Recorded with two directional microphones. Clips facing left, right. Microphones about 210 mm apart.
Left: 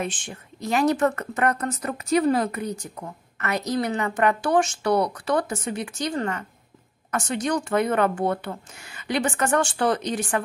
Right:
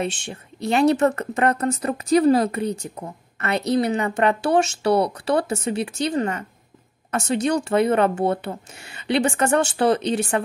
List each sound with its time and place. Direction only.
0.0 s speech: 25° right (ahead or behind)